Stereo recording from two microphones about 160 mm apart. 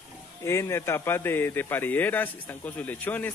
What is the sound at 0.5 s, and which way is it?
A man's voice, 15° left (ahead or behind).